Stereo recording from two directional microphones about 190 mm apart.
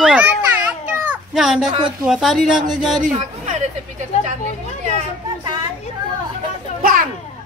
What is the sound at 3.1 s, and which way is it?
Speech, 35° right (ahead or behind).